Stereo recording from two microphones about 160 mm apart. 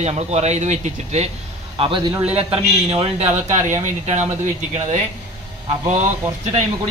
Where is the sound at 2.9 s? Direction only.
40° right (ahead or behind).